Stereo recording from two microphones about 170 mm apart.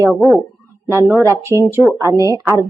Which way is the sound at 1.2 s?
15° right (ahead or behind).